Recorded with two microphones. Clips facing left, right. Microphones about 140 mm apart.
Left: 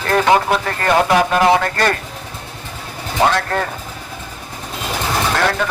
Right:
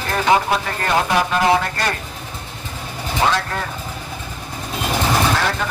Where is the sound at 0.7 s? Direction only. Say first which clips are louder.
Left 4 dB; 50° left (ahead or behind).